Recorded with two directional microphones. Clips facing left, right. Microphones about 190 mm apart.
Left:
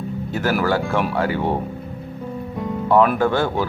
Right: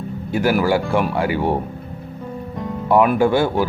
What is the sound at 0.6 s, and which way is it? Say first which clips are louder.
Speech: right 2 dB; 10° right (ahead or behind).